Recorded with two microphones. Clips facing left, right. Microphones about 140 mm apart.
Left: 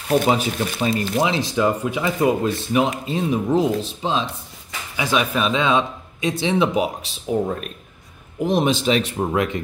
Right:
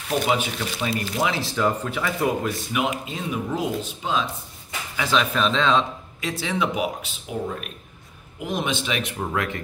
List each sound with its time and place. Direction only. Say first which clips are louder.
0.3 s speech: left 4 dB; 40° left (ahead or behind)
1.2 s speech: left 2 dB; 20° left (ahead or behind)
4.9 s speech: left 2 dB; 15° left (ahead or behind)